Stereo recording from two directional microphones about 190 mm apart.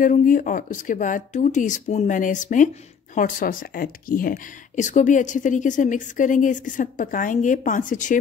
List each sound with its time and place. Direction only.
0.0 s speech: 45° left (ahead or behind)